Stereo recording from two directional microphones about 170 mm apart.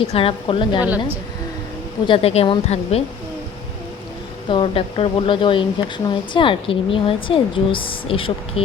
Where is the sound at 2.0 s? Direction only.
35° left (ahead or behind).